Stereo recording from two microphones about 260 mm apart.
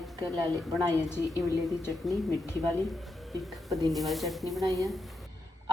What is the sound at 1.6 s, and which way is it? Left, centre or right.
A woman's voice, centre.